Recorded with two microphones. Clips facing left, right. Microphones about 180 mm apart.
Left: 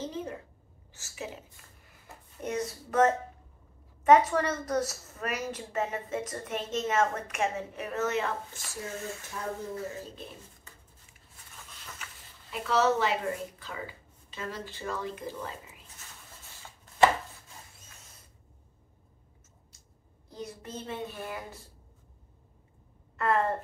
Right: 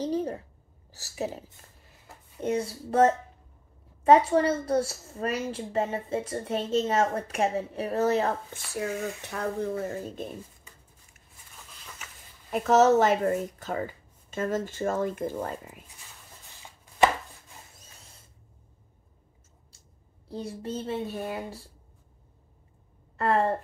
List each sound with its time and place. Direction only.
0.0 s a sound: 35° right (ahead or behind)
0.9 s speech: 35° right (ahead or behind)
2.4 s a woman's voice: 30° right (ahead or behind)
8.7 s speech: 65° right (ahead or behind); by 10.3 s 50° right (ahead or behind)
11.5 s a sound: centre (ahead or behind)
12.4 s speech: 45° right (ahead or behind)
20.2 s a woman's voice: 30° right (ahead or behind)
23.1 s gasp: 30° right (ahead or behind)